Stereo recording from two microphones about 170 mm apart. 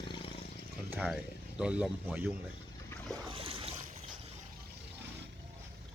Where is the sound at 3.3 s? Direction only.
35° right (ahead or behind).